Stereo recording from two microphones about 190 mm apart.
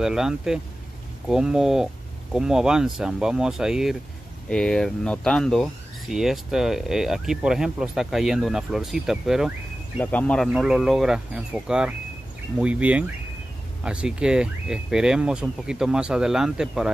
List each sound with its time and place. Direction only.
0.0 s speech: 5° right (ahead or behind)